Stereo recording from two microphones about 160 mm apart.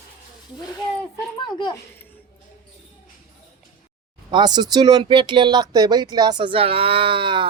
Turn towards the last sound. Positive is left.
turn(degrees=-30)  # may be behind; listen again after turning